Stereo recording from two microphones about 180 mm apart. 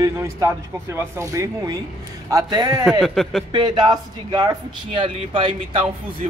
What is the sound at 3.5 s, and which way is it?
Speech, 25° right (ahead or behind).